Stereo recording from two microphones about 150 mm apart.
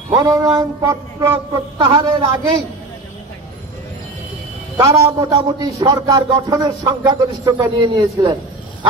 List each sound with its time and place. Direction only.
0.1 s a man's voice: 25° right (ahead or behind)
4.7 s a man's voice: 20° right (ahead or behind)